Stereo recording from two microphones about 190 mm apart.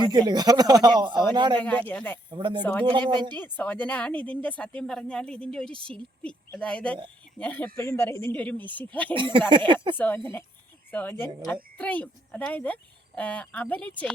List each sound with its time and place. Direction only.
0.0 s speech: 20° right (ahead or behind)
1.5 s speech: 10° left (ahead or behind)
2.3 s speech: 25° right (ahead or behind)
3.3 s speech: 10° left (ahead or behind)
9.1 s speech: 25° right (ahead or behind)
9.9 s speech: 10° left (ahead or behind)